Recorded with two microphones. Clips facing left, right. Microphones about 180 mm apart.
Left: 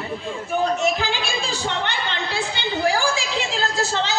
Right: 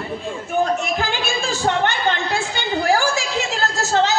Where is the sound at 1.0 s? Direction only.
50° right (ahead or behind).